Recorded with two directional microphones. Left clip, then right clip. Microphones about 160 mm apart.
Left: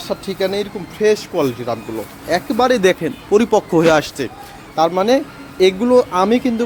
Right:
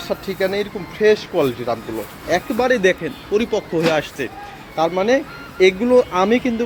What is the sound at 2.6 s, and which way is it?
Speech, 35° left (ahead or behind).